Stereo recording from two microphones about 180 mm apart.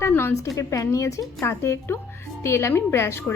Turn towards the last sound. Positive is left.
turn(degrees=15)  # may be behind; listen again after turning